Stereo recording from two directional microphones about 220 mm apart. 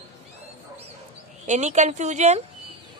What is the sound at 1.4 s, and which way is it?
A woman's voice, 30° right (ahead or behind).